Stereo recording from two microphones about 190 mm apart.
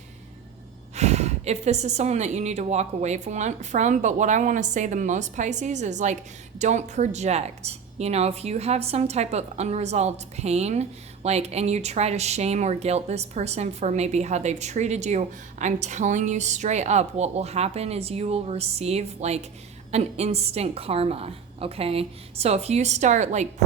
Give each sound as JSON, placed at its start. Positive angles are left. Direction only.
{"t": 0.9, "sound": "a woman's voice", "side_deg": -35}